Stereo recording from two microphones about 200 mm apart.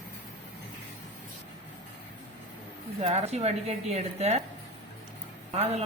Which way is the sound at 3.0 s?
30° right (ahead or behind).